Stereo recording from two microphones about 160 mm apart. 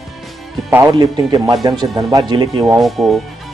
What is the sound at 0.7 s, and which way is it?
Speech, 20° right (ahead or behind).